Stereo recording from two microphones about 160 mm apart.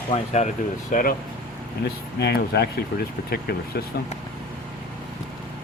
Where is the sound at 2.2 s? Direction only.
85° left.